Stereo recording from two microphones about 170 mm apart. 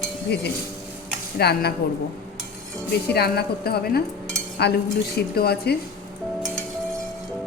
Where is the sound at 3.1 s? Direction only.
70° left (ahead or behind).